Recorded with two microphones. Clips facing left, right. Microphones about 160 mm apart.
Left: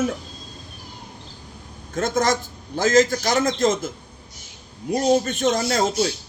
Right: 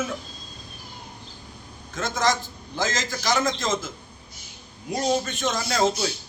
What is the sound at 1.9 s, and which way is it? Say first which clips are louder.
A man's voice: left 4 dB; 50° left (ahead or behind).